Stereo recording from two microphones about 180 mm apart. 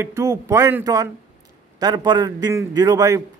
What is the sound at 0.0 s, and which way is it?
A man's voice, 15° right (ahead or behind).